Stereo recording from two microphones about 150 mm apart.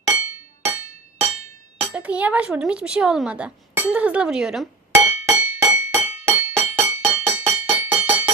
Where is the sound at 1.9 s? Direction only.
10° right (ahead or behind).